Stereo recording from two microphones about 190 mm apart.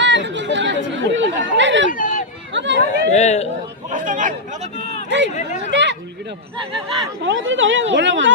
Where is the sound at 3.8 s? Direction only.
45° right (ahead or behind).